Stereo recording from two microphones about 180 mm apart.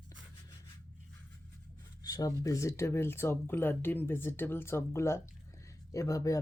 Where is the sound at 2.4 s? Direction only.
15° left (ahead or behind).